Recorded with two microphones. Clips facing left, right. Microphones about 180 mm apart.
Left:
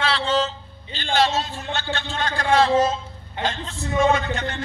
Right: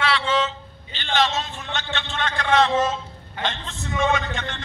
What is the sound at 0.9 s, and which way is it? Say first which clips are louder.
A man's voice: left 2 dB; 35° left (ahead or behind).